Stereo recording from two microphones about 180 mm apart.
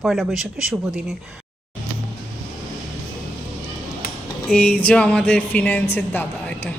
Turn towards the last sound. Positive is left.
turn(degrees=10)  # may be behind; listen again after turning